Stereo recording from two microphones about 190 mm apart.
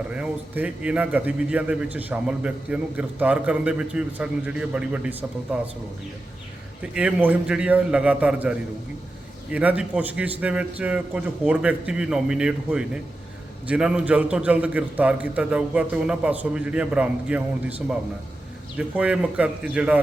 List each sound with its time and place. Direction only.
0.1 s a man's voice: 5° right (ahead or behind)
6.9 s a man's voice: 5° right (ahead or behind)